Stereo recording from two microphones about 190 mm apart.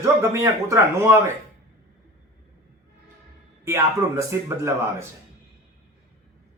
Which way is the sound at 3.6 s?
15° right (ahead or behind).